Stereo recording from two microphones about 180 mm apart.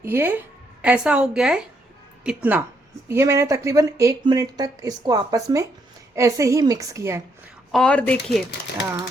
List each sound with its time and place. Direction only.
0.0 s a woman's voice: 10° right (ahead or behind)
7.7 s speech: 5° left (ahead or behind)